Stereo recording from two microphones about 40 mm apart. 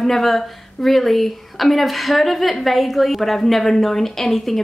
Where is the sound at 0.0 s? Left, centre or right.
Centre.